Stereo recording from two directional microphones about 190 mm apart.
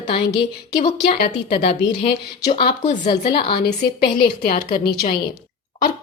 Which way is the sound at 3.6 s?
55° left (ahead or behind).